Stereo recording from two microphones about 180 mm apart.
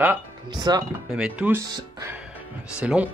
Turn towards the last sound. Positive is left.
turn(degrees=-5)  # may be behind; listen again after turning